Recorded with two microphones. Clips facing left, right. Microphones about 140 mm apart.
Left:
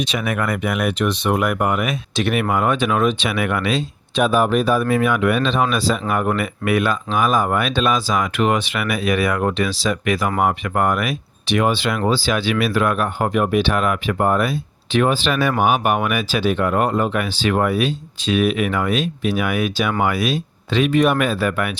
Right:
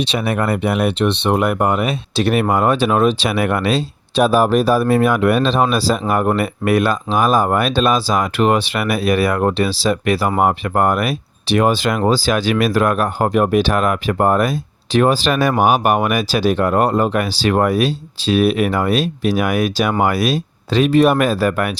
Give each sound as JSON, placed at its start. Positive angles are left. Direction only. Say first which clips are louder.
{"t": 0.0, "sound": "speech", "louder": "right 3 dB", "side_deg": -30}